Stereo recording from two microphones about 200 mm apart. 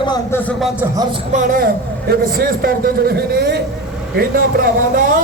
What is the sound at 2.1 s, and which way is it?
A man's voice, 50° right (ahead or behind).